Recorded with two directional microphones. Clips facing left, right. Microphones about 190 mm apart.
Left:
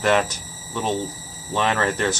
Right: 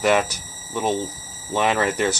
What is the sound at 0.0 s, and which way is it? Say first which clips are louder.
Speech: right 1 dB; 10° right (ahead or behind).